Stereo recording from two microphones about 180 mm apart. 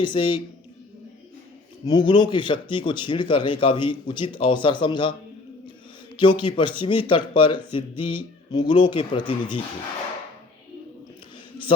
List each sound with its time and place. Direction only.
0.0 s speech: 25° left (ahead or behind)
1.9 s speech: 25° left (ahead or behind)
6.1 s speech: 25° left (ahead or behind)